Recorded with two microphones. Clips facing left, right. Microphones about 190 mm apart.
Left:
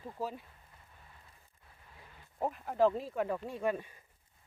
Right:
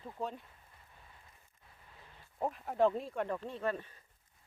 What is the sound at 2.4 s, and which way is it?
Speech, centre (ahead or behind).